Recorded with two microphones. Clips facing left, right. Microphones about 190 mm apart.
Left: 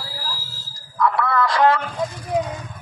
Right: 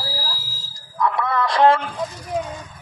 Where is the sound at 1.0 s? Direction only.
20° right (ahead or behind).